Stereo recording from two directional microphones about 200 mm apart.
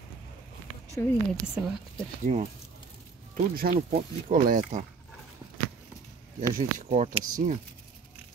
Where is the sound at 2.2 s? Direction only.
35° right (ahead or behind).